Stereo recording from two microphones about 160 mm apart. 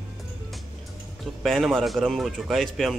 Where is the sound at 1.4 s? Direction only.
Centre (ahead or behind).